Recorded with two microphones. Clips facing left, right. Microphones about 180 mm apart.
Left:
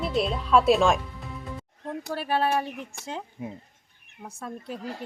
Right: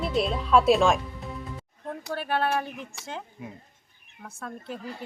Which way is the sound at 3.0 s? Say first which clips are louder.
Left 4 dB; 35° left (ahead or behind).